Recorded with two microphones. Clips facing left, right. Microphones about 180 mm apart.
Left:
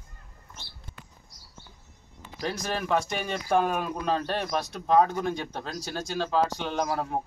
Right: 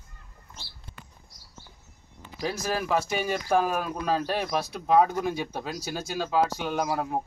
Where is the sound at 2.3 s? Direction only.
5° right (ahead or behind).